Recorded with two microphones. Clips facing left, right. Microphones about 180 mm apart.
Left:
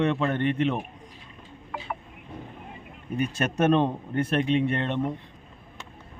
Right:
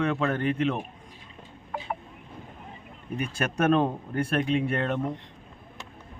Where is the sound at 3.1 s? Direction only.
30° left (ahead or behind).